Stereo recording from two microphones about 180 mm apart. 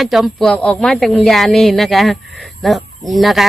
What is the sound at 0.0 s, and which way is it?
Speech, centre (ahead or behind).